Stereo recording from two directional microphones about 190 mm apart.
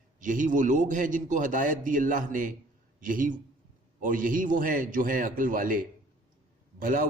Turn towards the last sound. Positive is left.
turn(degrees=-45)  # may be behind; listen again after turning